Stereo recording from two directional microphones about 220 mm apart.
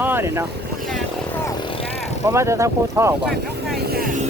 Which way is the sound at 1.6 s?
25° left (ahead or behind).